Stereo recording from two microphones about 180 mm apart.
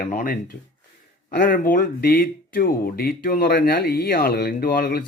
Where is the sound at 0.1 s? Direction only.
50° left (ahead or behind).